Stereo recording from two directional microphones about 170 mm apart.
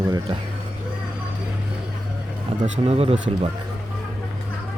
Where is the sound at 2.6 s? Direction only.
40° right (ahead or behind).